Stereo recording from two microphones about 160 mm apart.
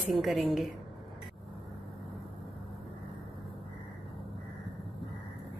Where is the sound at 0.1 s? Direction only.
Centre (ahead or behind).